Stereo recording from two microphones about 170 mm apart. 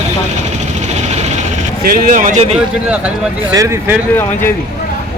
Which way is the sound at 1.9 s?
55° right (ahead or behind).